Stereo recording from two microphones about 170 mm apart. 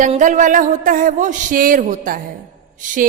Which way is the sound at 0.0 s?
45° right (ahead or behind).